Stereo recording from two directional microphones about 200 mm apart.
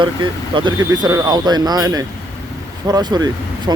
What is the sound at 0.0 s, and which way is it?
Speech, 25° right (ahead or behind).